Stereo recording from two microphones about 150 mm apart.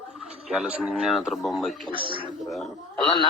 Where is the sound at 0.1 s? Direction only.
5° right (ahead or behind).